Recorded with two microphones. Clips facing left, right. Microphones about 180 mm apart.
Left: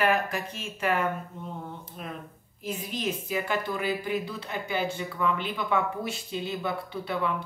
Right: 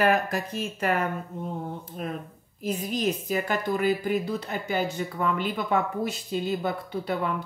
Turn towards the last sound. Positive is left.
turn(degrees=-40)  # may be behind; listen again after turning